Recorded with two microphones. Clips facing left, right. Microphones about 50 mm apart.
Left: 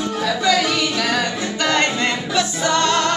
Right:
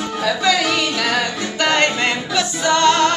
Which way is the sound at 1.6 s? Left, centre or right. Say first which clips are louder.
Right 2 dB; right.